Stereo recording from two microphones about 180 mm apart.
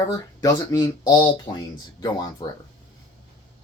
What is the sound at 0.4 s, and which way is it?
Speech, 20° left (ahead or behind).